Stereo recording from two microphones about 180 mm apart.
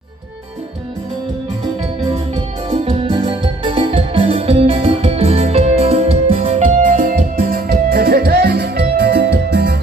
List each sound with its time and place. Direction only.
2.0 s music: 35° right (ahead or behind); by 9.8 s 60° right (ahead or behind)